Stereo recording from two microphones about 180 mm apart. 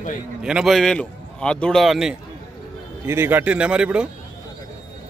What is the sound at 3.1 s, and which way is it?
Speech, 10° right (ahead or behind).